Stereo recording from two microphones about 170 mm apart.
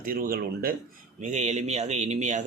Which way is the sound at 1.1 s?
45° right (ahead or behind).